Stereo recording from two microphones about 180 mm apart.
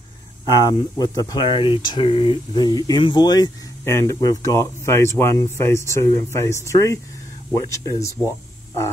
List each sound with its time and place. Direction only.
0.5 s speech: 20° left (ahead or behind)